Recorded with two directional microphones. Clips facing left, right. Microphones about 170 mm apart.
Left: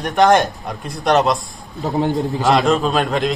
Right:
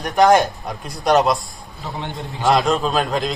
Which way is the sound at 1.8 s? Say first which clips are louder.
Left 11 dB; 40° left (ahead or behind).